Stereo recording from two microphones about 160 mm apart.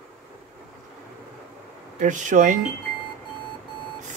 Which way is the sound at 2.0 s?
50° right (ahead or behind).